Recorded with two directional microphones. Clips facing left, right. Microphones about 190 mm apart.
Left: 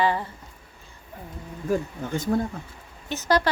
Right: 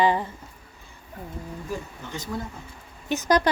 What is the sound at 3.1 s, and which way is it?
Speech, 15° right (ahead or behind).